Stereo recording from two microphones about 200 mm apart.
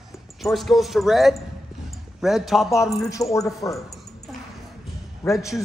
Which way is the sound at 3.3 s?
15° left (ahead or behind).